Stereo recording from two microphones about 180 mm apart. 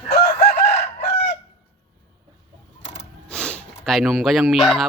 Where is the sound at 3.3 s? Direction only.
5° left (ahead or behind).